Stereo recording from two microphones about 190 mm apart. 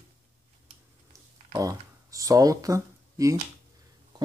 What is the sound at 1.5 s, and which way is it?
Speech, 15° right (ahead or behind).